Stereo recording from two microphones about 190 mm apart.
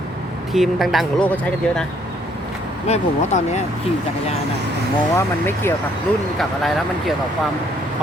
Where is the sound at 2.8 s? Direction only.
35° left (ahead or behind).